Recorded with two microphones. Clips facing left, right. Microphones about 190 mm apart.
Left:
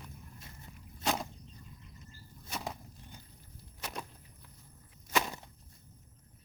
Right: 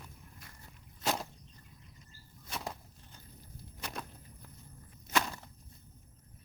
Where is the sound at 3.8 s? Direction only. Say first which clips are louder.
Even; 5° left (ahead or behind).